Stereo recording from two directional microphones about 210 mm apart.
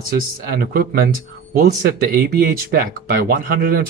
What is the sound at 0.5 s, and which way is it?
Speech, 45° right (ahead or behind).